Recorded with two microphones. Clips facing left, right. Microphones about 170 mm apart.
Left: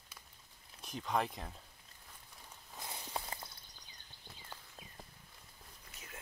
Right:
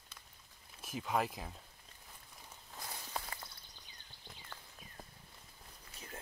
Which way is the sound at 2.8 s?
20° left (ahead or behind).